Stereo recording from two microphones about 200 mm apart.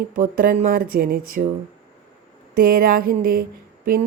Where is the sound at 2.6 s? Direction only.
45° right (ahead or behind).